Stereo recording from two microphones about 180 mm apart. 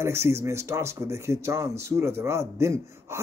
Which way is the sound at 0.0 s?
15° right (ahead or behind).